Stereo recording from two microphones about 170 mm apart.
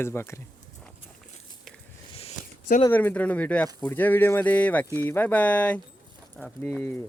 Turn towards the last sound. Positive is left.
turn(degrees=5)  # may be behind; listen again after turning